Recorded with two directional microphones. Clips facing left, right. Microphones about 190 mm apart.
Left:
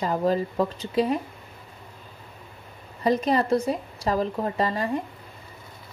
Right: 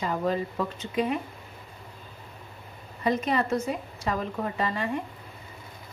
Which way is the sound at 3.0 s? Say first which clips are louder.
Left 4 dB; 35° left (ahead or behind).